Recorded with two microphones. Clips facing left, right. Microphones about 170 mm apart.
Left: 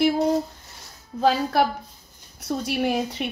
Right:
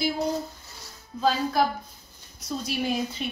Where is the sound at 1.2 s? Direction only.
70° left (ahead or behind).